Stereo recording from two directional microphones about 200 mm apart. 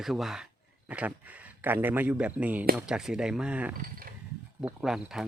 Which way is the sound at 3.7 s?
45° right (ahead or behind).